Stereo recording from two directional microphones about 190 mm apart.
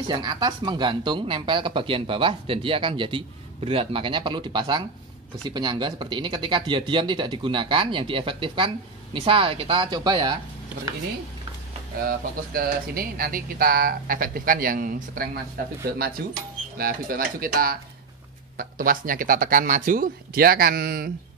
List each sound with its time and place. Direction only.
0.1 s speech: 20° right (ahead or behind)
12.1 s speech: 50° right (ahead or behind)